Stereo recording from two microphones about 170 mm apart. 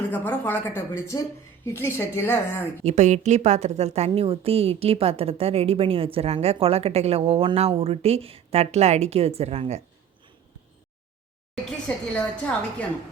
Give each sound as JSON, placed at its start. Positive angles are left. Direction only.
{"t": 0.1, "sound": "a woman's voice", "side_deg": 10}
{"t": 2.8, "sound": "a woman's voice", "side_deg": -40}
{"t": 11.6, "sound": "a woman's voice", "side_deg": 5}